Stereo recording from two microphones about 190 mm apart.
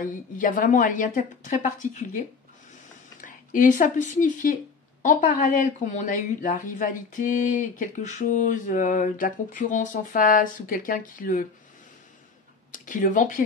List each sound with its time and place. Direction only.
0.0 s speech: 45° left (ahead or behind)
12.7 s speech: 45° left (ahead or behind)